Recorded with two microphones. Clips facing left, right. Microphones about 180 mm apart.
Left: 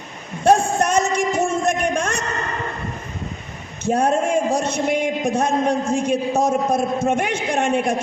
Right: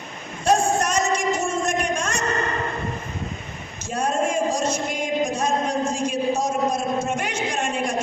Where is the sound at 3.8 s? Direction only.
60° left (ahead or behind).